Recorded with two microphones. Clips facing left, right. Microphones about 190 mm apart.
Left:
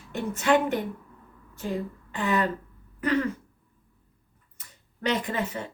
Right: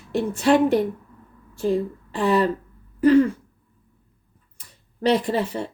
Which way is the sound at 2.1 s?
35° right (ahead or behind).